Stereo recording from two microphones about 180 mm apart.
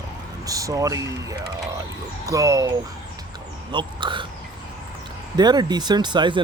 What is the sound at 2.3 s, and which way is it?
Speech, 20° right (ahead or behind).